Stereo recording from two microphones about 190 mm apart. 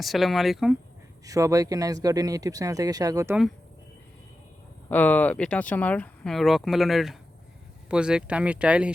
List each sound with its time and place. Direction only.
0.0 s speech: centre (ahead or behind)
1.2 s a man's voice: 15° right (ahead or behind)
4.9 s speech: 10° left (ahead or behind)